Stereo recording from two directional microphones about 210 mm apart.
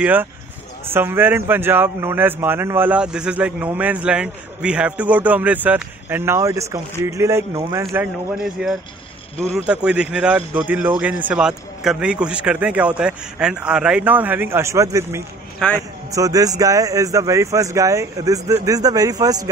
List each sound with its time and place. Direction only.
0.0 s a man's voice: 10° right (ahead or behind)
15.6 s a man's voice: 5° left (ahead or behind)
16.2 s speech: 15° right (ahead or behind)